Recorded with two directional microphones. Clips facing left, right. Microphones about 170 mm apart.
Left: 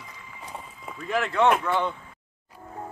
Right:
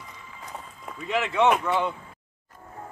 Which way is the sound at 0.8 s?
Centre (ahead or behind).